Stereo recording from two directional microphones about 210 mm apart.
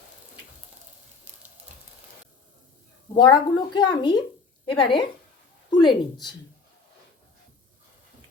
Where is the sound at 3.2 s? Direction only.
20° left (ahead or behind).